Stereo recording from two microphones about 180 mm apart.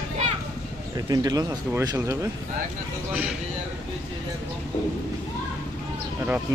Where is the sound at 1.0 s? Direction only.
20° right (ahead or behind).